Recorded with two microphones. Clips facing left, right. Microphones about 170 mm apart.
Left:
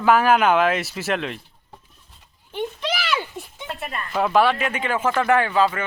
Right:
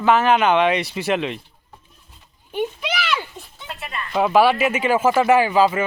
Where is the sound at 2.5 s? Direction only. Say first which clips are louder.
Right 2 dB; 15° right (ahead or behind).